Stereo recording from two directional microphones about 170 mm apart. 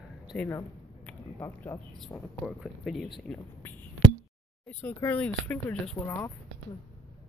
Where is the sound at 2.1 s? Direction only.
20° left (ahead or behind).